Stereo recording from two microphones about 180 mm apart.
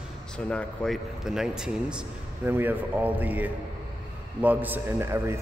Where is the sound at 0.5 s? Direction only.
5° left (ahead or behind).